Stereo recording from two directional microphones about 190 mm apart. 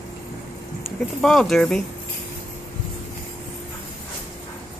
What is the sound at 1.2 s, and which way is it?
Speech, centre (ahead or behind).